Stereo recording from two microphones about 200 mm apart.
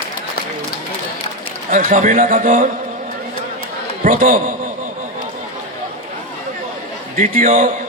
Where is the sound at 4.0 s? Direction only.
45° right (ahead or behind).